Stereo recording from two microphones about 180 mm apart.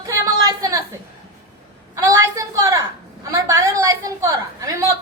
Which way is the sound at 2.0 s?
20° right (ahead or behind).